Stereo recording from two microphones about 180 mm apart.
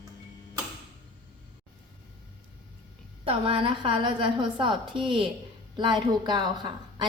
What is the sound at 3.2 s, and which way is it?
A woman's voice, 30° right (ahead or behind).